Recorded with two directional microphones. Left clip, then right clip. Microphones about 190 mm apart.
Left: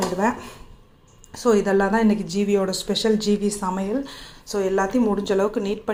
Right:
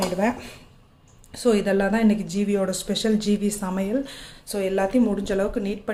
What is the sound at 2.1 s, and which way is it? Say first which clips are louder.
Speech: left 2 dB; 10° right (ahead or behind).